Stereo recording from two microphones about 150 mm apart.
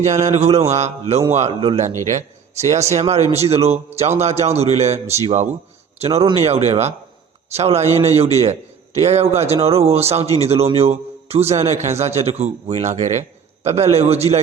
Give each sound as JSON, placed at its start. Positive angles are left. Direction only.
{"t": 0.3, "sound": "a man's voice", "side_deg": -45}
{"t": 2.0, "sound": "a man's voice", "side_deg": -50}